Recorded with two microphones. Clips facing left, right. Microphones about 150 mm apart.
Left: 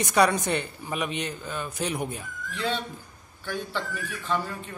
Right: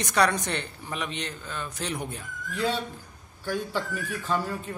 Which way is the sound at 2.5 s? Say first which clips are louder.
Right 2 dB; 40° right (ahead or behind).